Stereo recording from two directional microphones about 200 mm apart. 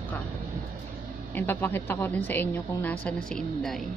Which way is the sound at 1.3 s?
10° left (ahead or behind).